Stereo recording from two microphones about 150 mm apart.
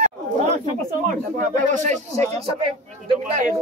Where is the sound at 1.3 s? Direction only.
55° right (ahead or behind).